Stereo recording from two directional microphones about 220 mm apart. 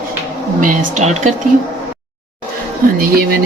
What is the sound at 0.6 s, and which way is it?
Speech, 35° right (ahead or behind).